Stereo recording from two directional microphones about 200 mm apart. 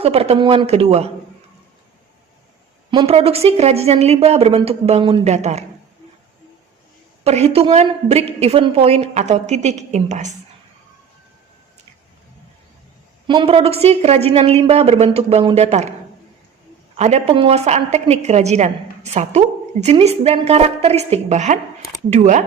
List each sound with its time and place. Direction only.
0.0 s speech: 30° right (ahead or behind)
2.9 s a woman's voice: 25° right (ahead or behind)
7.3 s a woman's voice: 30° right (ahead or behind)
13.2 s a woman's voice: 25° right (ahead or behind)
17.0 s a woman's voice: 35° right (ahead or behind)